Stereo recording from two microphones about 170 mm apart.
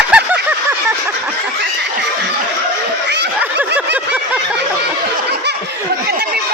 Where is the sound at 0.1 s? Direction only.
5° right (ahead or behind).